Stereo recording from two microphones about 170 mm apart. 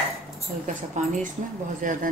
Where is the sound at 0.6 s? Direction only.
50° right (ahead or behind).